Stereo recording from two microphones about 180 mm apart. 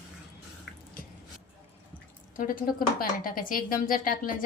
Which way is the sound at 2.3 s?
50° left (ahead or behind).